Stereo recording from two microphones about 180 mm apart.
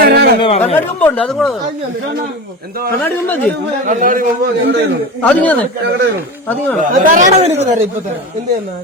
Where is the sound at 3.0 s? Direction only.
10° left (ahead or behind).